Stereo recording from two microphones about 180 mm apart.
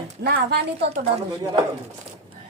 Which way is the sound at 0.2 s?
65° right (ahead or behind).